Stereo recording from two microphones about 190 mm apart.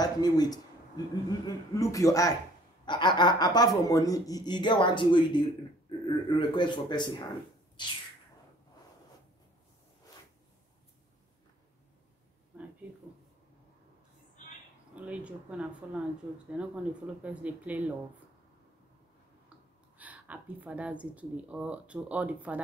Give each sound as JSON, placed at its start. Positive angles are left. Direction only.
{"t": 0.0, "sound": "a man's voice", "side_deg": 20}
{"t": 12.5, "sound": "a sound", "side_deg": -10}
{"t": 15.0, "sound": "a woman's voice", "side_deg": -5}
{"t": 20.0, "sound": "a woman's voice", "side_deg": -10}